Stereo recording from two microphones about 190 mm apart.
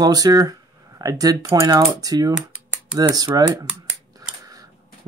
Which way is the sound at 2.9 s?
20° right (ahead or behind).